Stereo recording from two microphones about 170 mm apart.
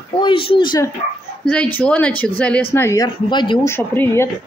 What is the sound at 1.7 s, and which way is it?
A woman's voice, 10° left (ahead or behind).